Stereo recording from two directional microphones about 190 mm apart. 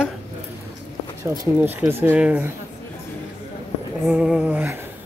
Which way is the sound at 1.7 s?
10° right (ahead or behind).